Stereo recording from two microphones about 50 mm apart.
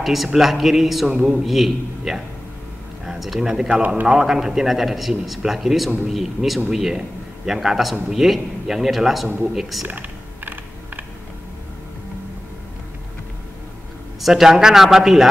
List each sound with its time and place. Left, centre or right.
0.0 s a man's voice: centre
1.1 s speech: centre
1.4 s speech: centre
3.1 s a sound: centre
3.3 s speech: centre
9.8 s typing: right
14.2 s speech: centre